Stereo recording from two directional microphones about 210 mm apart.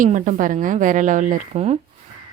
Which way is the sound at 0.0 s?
35° right (ahead or behind).